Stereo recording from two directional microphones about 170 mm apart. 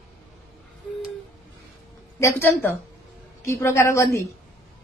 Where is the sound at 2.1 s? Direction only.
15° left (ahead or behind).